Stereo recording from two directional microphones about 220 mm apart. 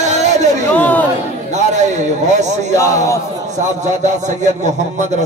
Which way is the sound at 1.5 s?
30° right (ahead or behind).